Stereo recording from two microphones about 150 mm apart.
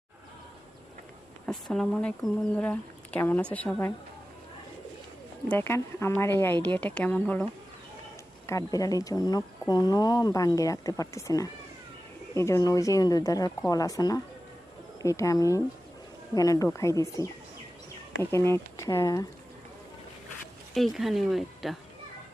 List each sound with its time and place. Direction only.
1.5 s speech: 5° left (ahead or behind)
5.5 s speech: 15° left (ahead or behind)
8.4 s speech: 20° left (ahead or behind)
20.7 s speech: centre (ahead or behind)